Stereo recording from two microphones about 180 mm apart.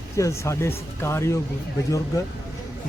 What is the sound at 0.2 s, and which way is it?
Speech, 15° left (ahead or behind).